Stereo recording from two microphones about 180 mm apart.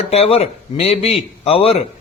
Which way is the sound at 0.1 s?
35° left (ahead or behind).